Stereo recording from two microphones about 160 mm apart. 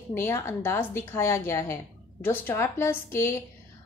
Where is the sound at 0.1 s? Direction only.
15° left (ahead or behind).